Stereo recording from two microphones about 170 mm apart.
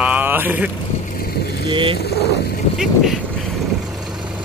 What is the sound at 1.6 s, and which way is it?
Speech, 30° right (ahead or behind).